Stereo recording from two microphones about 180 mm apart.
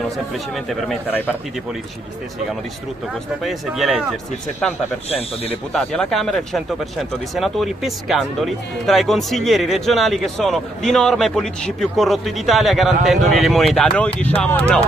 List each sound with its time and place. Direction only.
0.7 s speech: 5° left (ahead or behind)
3.4 s speech: centre (ahead or behind)
5.1 s speech: 35° left (ahead or behind)
5.7 s speech: 5° left (ahead or behind)